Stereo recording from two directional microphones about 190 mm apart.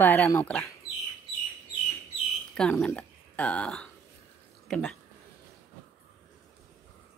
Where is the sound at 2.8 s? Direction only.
5° left (ahead or behind).